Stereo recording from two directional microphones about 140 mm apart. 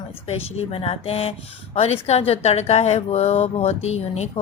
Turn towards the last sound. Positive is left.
turn(degrees=50)  # may be behind; listen again after turning